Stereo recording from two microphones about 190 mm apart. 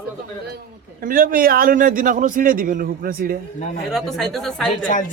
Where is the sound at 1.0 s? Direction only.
45° right (ahead or behind).